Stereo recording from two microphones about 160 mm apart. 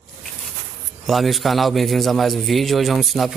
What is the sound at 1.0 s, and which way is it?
A man's voice, centre (ahead or behind).